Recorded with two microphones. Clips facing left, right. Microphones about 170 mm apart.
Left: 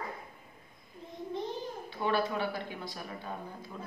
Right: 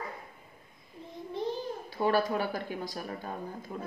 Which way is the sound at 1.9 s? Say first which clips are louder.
Right 4 dB; 40° right (ahead or behind).